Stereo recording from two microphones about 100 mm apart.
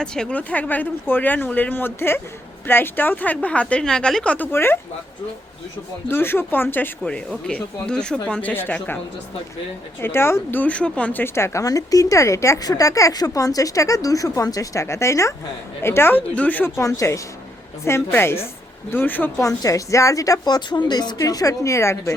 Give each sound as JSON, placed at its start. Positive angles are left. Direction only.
{"t": 0.0, "sound": "speech", "side_deg": 5}
{"t": 4.5, "sound": "a woman's voice", "side_deg": 25}
{"t": 6.1, "sound": "a woman's voice", "side_deg": 20}
{"t": 10.0, "sound": "a woman's voice", "side_deg": 25}
{"t": 19.4, "sound": "a woman's voice", "side_deg": 35}